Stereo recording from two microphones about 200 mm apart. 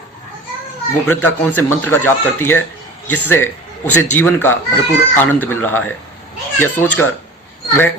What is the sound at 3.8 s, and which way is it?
Speech, 90° left.